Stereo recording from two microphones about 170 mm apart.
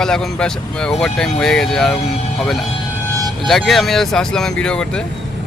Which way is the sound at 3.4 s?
Centre (ahead or behind).